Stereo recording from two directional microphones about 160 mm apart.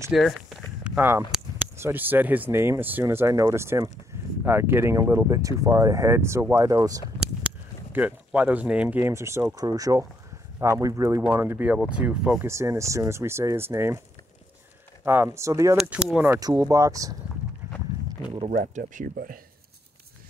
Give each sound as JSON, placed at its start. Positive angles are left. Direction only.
{"t": 0.1, "sound": "speech", "side_deg": 0}
{"t": 7.4, "sound": "speech", "side_deg": -10}
{"t": 12.4, "sound": "speech", "side_deg": -20}
{"t": 15.0, "sound": "speech", "side_deg": -15}
{"t": 15.8, "sound": "speech", "side_deg": -5}
{"t": 16.3, "sound": "speech", "side_deg": -25}
{"t": 18.5, "sound": "speech", "side_deg": -55}